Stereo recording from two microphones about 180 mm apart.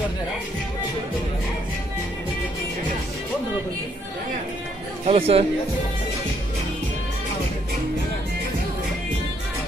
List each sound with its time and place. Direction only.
5.0 s speech: 30° right (ahead or behind)